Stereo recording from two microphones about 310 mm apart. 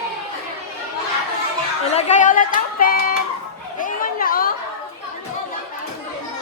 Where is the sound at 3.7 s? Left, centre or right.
Left.